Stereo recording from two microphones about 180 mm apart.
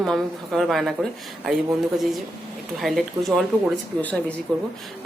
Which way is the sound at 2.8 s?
Centre (ahead or behind).